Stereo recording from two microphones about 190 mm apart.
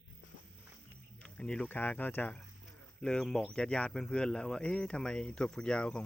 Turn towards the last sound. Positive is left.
turn(degrees=5)  # may be behind; listen again after turning